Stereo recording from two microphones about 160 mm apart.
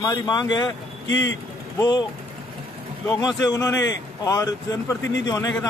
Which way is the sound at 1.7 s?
25° left (ahead or behind).